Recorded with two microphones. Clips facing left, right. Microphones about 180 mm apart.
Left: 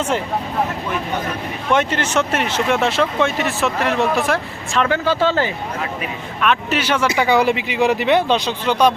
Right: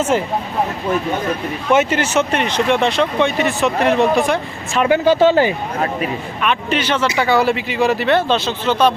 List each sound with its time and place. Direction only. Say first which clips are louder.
0.1 s speech: right 5 dB; 5° right (ahead or behind)
1.7 s speech: right 3 dB; 5° right (ahead or behind)
2.3 s speech: right 2 dB; 5° left (ahead or behind)
4.8 s speech: right 5 dB; 15° right (ahead or behind)
6.4 s speech: left 1 dB; centre (ahead or behind)